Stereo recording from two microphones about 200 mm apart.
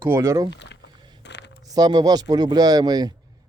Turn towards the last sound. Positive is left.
turn(degrees=-20)  # may be behind; listen again after turning